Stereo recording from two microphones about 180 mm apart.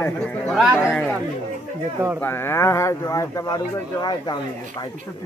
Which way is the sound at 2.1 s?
10° left (ahead or behind).